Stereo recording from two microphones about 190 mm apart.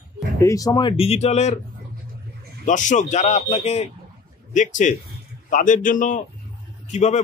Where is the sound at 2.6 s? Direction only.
40° left (ahead or behind).